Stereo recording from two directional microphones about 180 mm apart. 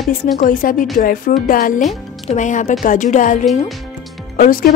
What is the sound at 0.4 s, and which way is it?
A woman's voice, 50° left (ahead or behind).